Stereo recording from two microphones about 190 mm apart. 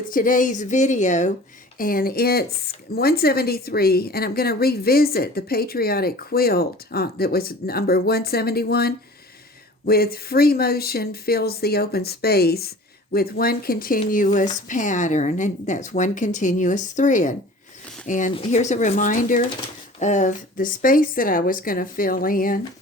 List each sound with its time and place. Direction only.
0.1 s speech: 45° left (ahead or behind)
1.8 s speech: 50° left (ahead or behind)